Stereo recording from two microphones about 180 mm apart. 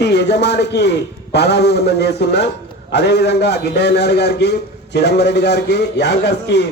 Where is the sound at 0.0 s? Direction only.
70° left (ahead or behind).